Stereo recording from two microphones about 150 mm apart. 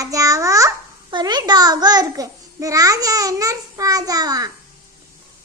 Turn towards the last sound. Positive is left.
turn(degrees=-25)  # may be behind; listen again after turning